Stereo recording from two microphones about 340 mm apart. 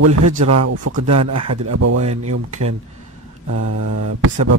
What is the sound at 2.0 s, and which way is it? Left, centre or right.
Speech, centre.